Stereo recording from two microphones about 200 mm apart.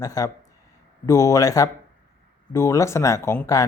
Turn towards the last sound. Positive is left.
turn(degrees=15)  # may be behind; listen again after turning